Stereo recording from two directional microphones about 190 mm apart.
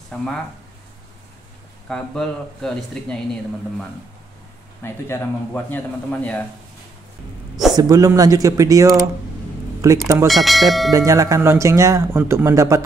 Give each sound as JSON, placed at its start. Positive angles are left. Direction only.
{"t": 0.1, "sound": "speech", "side_deg": 5}
{"t": 1.9, "sound": "speech", "side_deg": 5}
{"t": 4.8, "sound": "a man's voice", "side_deg": 10}
{"t": 7.7, "sound": "speech", "side_deg": -20}
{"t": 10.2, "sound": "speech", "side_deg": 0}
{"t": 10.9, "sound": "speech", "side_deg": -15}